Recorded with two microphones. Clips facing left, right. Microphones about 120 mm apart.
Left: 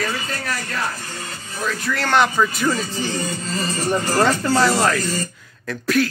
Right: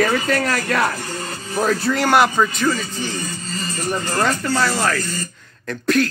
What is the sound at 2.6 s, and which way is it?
Speech, 25° left (ahead or behind).